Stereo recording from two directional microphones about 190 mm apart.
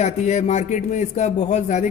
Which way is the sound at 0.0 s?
35° left (ahead or behind).